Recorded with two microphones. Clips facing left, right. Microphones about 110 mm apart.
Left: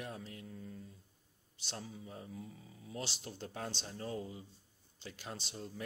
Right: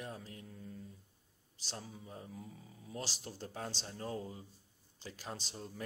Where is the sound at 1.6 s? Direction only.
40° right (ahead or behind).